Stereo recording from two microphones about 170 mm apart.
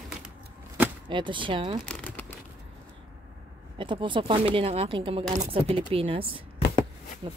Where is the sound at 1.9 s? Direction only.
10° left (ahead or behind).